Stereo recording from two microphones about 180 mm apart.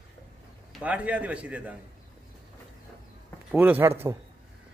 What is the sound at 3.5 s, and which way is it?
Speech, 10° right (ahead or behind).